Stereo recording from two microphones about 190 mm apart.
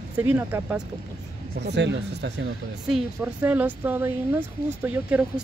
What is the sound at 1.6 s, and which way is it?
Speech, 65° right (ahead or behind).